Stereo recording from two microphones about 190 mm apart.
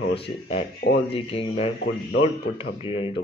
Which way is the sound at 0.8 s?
50° left (ahead or behind).